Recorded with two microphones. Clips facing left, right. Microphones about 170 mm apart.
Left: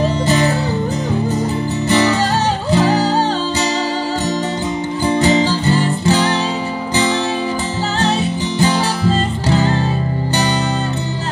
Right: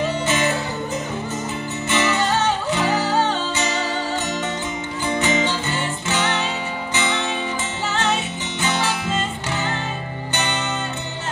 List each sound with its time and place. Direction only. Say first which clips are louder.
0.0 s music: left 5 dB; 35° left (ahead or behind)
1.9 s music: left 5 dB; 35° left (ahead or behind)
5.0 s music: left 7 dB; 35° left (ahead or behind)
8.5 s music: left 5 dB; 35° left (ahead or behind)